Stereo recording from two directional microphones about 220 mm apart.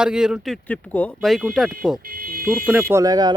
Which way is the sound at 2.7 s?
10° right (ahead or behind).